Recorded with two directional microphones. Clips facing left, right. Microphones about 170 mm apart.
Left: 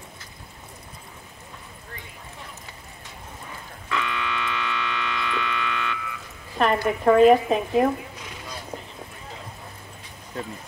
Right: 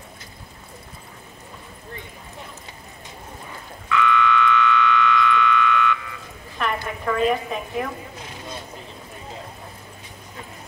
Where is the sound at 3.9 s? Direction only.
35° left (ahead or behind).